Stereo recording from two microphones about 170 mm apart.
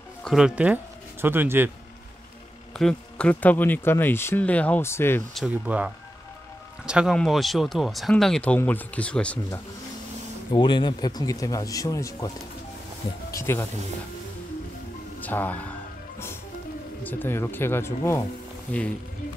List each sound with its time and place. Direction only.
0.2 s speech: centre (ahead or behind)
2.8 s speech: 5° left (ahead or behind)
5.3 s speech: 5° right (ahead or behind)
6.9 s speech: 5° right (ahead or behind)
10.5 s speech: 25° left (ahead or behind)
13.3 s speech: 15° left (ahead or behind)
15.1 s speech: 10° left (ahead or behind)
17.0 s speech: 10° left (ahead or behind)